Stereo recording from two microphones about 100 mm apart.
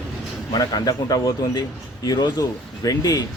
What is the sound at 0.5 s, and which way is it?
Speech, 40° left (ahead or behind).